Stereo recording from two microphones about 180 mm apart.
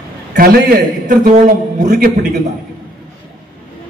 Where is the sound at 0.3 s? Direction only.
55° right (ahead or behind).